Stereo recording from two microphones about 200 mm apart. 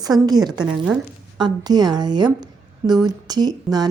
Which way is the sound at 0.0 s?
20° right (ahead or behind).